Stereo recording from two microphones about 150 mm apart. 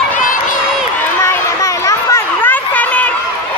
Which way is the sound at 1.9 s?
20° left (ahead or behind).